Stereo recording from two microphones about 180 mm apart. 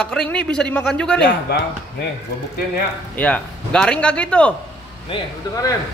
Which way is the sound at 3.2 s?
5° left (ahead or behind).